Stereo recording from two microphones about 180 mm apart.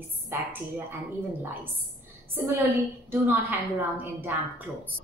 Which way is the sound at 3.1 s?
10° right (ahead or behind).